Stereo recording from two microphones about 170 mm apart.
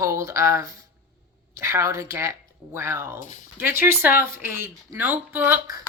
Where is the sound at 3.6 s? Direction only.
15° right (ahead or behind).